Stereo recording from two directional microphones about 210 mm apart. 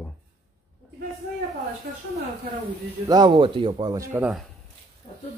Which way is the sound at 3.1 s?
20° right (ahead or behind).